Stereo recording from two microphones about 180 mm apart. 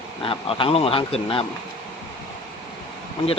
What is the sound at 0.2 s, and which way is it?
Speech, 30° left (ahead or behind).